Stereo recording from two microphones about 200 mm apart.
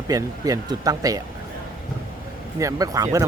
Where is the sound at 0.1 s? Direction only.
15° right (ahead or behind).